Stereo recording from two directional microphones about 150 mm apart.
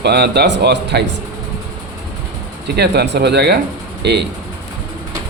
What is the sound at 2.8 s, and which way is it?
Speech, 90° right.